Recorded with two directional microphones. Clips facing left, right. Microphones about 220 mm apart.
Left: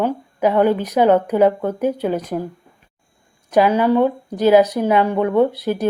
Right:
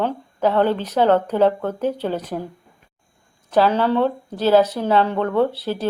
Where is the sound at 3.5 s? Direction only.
15° left (ahead or behind).